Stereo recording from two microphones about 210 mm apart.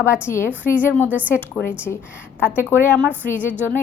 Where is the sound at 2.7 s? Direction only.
10° left (ahead or behind).